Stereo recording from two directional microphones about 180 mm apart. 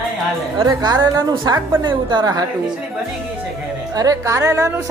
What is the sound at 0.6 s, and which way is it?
A woman's voice, 25° right (ahead or behind).